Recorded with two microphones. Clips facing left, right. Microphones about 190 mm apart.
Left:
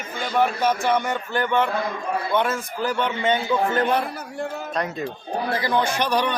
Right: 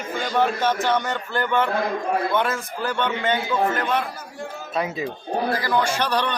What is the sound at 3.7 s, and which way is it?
Speech, 30° left (ahead or behind).